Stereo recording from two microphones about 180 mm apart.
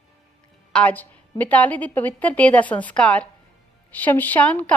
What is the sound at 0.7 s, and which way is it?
A woman's voice, 10° left (ahead or behind).